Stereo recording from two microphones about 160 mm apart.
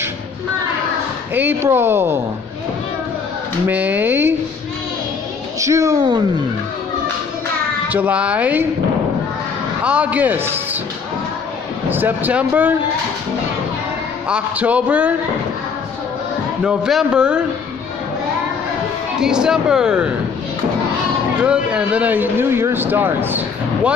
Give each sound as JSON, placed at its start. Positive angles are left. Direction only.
{"t": 1.3, "sound": "speech", "side_deg": -10}
{"t": 3.6, "sound": "speech", "side_deg": -10}
{"t": 5.6, "sound": "speech", "side_deg": -20}
{"t": 7.9, "sound": "speech", "side_deg": -10}
{"t": 9.8, "sound": "speech", "side_deg": -10}
{"t": 11.9, "sound": "speech", "side_deg": -10}
{"t": 14.2, "sound": "speech", "side_deg": -5}
{"t": 16.6, "sound": "speech", "side_deg": -5}
{"t": 19.1, "sound": "speech", "side_deg": -5}
{"t": 21.4, "sound": "speech", "side_deg": -5}